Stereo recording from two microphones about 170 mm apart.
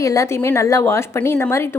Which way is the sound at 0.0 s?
20° left (ahead or behind).